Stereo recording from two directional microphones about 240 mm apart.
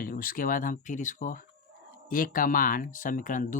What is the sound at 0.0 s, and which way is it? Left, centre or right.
Speech, left.